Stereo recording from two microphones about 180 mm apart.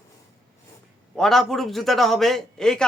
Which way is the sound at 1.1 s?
Centre (ahead or behind).